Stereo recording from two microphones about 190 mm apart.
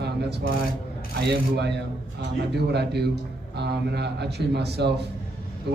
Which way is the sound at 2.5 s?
60° right (ahead or behind).